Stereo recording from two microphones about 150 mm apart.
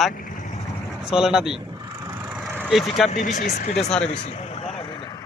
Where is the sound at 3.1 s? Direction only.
60° left (ahead or behind).